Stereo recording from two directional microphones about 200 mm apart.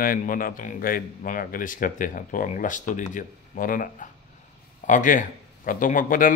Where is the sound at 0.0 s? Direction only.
45° left (ahead or behind).